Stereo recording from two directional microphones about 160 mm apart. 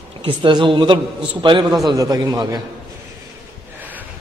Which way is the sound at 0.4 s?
30° right (ahead or behind).